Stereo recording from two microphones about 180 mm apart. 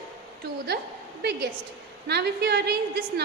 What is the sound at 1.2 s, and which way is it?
A woman's voice, 65° right (ahead or behind).